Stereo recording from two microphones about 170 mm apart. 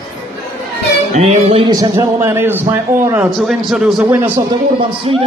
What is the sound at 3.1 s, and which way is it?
A man's voice, 5° right (ahead or behind).